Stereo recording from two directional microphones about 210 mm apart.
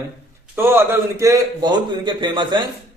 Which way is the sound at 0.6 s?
10° right (ahead or behind).